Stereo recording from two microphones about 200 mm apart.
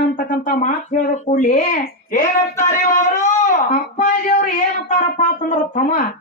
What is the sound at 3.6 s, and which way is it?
Speech, 40° left (ahead or behind).